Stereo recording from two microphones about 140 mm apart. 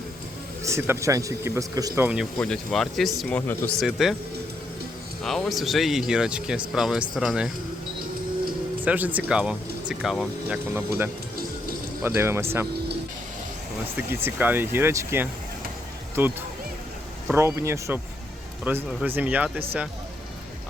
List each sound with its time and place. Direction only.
0.6 s speech: 20° right (ahead or behind)
2.4 s a man's voice: 5° left (ahead or behind)
3.8 s speech: centre (ahead or behind)
5.2 s speech: centre (ahead or behind)
8.8 s speech: 10° right (ahead or behind)
10.8 s speech: 15° right (ahead or behind)
14.3 s speech: 15° right (ahead or behind)
17.3 s speech: 20° right (ahead or behind)